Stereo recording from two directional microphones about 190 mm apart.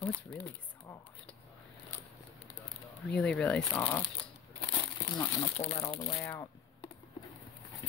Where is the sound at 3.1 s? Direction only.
5° left (ahead or behind).